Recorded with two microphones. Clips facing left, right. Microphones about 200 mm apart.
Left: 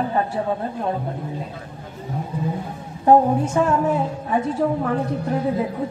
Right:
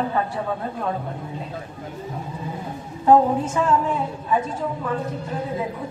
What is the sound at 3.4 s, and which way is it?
Speech, 65° left (ahead or behind).